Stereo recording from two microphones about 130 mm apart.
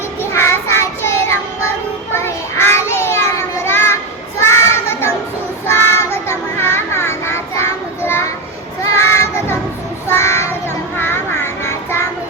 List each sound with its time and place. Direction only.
0.2 s child singing: 20° left (ahead or behind)
4.4 s children playing: 20° left (ahead or behind)
5.6 s child singing: 20° left (ahead or behind)